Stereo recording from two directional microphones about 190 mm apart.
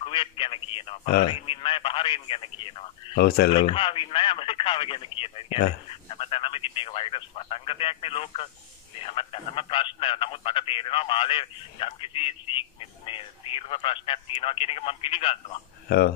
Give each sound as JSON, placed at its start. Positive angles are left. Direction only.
{"t": 0.0, "sound": "a man's voice", "side_deg": 25}